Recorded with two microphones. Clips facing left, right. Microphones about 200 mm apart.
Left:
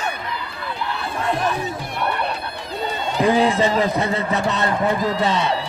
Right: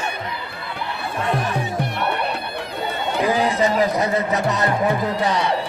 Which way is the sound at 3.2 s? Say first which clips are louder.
Left 3 dB; 25° left (ahead or behind).